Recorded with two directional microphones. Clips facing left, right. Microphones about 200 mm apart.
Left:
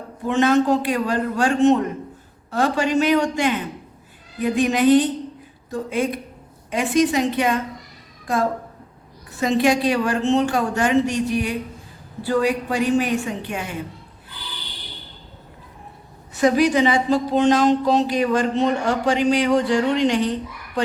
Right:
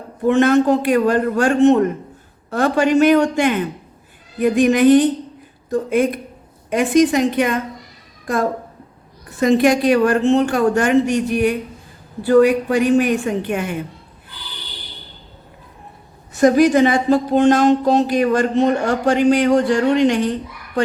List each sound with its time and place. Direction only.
0.3 s a woman's voice: 55° right (ahead or behind)
9.4 s a woman's voice: 55° right (ahead or behind)
16.3 s speech: 45° right (ahead or behind)